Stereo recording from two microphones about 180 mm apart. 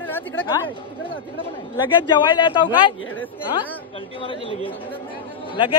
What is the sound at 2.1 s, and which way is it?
Speech, 25° left (ahead or behind).